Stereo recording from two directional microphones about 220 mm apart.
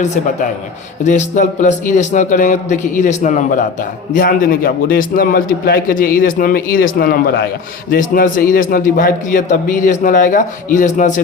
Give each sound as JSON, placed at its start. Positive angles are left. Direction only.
{"t": 1.0, "sound": "a man's voice", "side_deg": 35}